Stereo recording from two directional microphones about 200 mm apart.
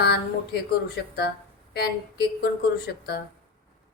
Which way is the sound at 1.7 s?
55° left (ahead or behind).